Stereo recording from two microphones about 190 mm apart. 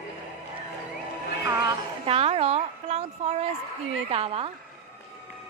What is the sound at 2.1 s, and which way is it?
A woman's voice, 30° right (ahead or behind).